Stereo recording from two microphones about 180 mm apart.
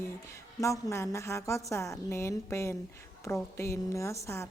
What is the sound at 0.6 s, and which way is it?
A woman's voice, 15° left (ahead or behind).